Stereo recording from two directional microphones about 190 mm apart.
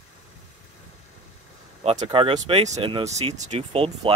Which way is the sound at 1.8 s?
30° right (ahead or behind).